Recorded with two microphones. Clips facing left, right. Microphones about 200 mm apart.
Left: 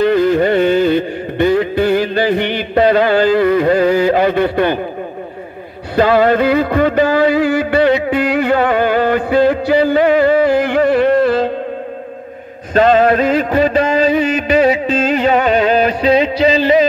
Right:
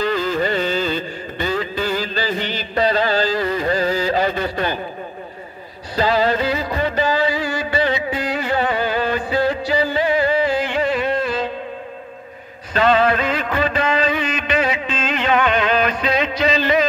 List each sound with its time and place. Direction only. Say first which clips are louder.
0.0 s carnatic music: left 8 dB; 60° left (ahead or behind)
5.9 s music: left 7 dB; 55° left (ahead or behind)
10.4 s carnatic music: left 7 dB; 60° left (ahead or behind)
10.9 s music: left 9 dB; 60° left (ahead or behind)
12.7 s music: left 6 dB; 45° left (ahead or behind)